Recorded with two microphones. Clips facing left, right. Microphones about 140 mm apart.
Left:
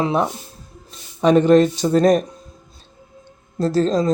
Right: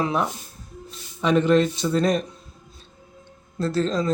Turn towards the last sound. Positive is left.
turn(degrees=35)  # may be behind; listen again after turning